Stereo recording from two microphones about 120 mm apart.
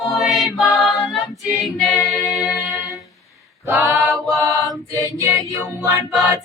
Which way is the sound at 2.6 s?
30° left (ahead or behind).